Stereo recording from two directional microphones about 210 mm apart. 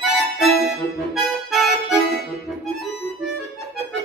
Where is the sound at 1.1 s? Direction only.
Centre (ahead or behind).